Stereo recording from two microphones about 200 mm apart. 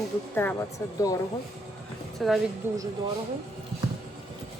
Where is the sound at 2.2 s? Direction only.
Centre (ahead or behind).